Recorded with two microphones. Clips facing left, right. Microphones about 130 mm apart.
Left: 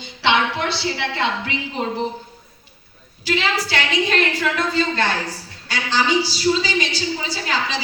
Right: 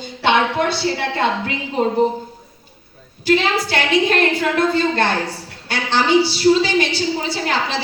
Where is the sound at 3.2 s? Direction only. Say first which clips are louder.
Right 5 dB; 50° right (ahead or behind).